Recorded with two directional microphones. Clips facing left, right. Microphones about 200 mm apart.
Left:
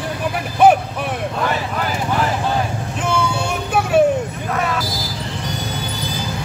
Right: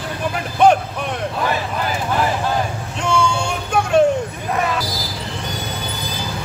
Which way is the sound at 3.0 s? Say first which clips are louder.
Right 2 dB; 5° left (ahead or behind).